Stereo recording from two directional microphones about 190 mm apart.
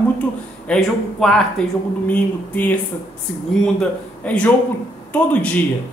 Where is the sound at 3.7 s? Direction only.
5° left (ahead or behind).